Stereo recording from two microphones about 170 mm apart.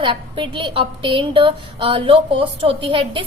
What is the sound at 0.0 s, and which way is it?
A woman's voice, 30° right (ahead or behind).